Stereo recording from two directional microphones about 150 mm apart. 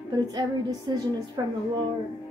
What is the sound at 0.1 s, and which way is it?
A woman's voice, 25° right (ahead or behind).